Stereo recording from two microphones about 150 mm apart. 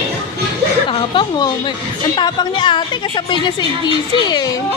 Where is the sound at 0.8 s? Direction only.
35° left (ahead or behind).